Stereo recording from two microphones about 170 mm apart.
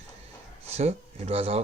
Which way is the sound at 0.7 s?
40° right (ahead or behind).